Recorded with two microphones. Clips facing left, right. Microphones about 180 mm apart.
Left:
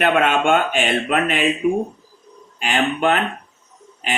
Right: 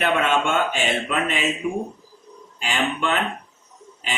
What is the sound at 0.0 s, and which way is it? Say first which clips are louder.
Speech: left 4 dB; 55° left (ahead or behind).